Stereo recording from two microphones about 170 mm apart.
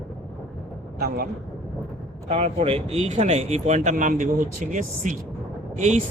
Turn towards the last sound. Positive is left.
turn(degrees=-45)  # may be behind; listen again after turning